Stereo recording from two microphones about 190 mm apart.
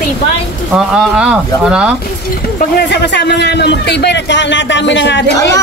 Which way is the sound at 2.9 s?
65° left (ahead or behind).